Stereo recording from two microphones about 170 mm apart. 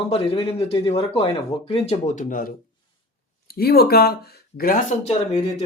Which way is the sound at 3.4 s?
65° left (ahead or behind).